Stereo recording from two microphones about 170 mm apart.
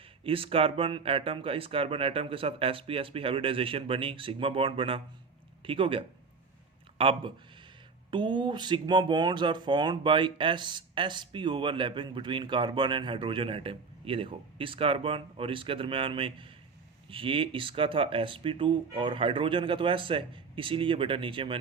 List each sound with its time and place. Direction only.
0.3 s speech: 30° right (ahead or behind)